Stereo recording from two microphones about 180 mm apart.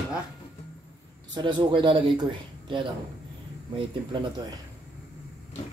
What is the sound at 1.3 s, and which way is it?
Speech, 25° right (ahead or behind).